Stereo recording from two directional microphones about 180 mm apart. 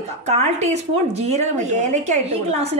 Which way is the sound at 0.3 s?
40° right (ahead or behind).